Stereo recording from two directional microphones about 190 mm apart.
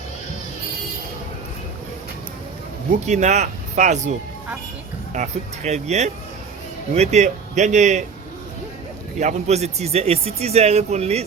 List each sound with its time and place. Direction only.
2.9 s a man's voice: 40° right (ahead or behind)
5.1 s a man's voice: 40° right (ahead or behind)
9.2 s a man's voice: 35° right (ahead or behind)